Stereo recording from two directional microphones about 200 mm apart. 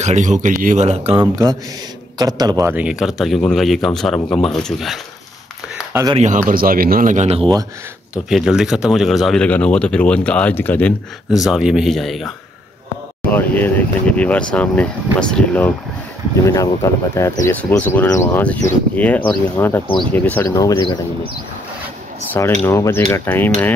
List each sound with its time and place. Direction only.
0.0 s speech: 35° right (ahead or behind); by 5.0 s centre (ahead or behind)
6.1 s speech: 35° right (ahead or behind)
8.1 s speech: centre (ahead or behind)
13.3 s speech: 10° left (ahead or behind)
17.1 s speech: 15° left (ahead or behind)
22.3 s speech: 10° left (ahead or behind)